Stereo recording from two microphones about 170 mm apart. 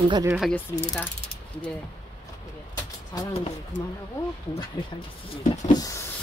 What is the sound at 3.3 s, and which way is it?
Speech, 35° left (ahead or behind).